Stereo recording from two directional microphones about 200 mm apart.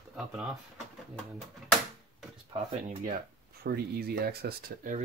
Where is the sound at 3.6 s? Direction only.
50° right (ahead or behind).